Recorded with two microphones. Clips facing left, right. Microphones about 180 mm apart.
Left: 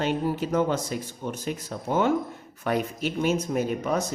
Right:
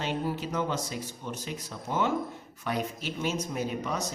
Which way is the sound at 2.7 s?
55° left (ahead or behind).